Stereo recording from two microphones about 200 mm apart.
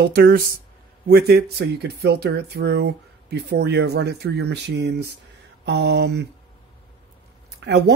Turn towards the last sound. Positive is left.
turn(degrees=-55)  # may be behind; listen again after turning